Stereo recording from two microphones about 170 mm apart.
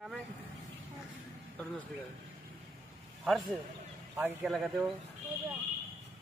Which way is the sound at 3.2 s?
Centre (ahead or behind).